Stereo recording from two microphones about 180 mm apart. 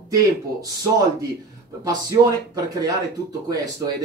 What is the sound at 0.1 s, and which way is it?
Speech, 20° right (ahead or behind).